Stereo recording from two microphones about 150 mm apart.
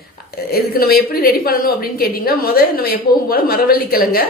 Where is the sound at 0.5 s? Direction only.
90° left.